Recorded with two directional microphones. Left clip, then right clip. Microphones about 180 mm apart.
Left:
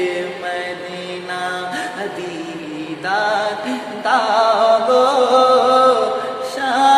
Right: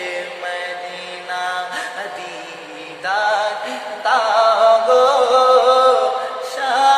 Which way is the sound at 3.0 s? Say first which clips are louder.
Even; 5° left (ahead or behind).